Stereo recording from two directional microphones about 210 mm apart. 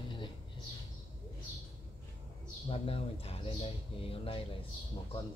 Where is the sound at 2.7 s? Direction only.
25° left (ahead or behind).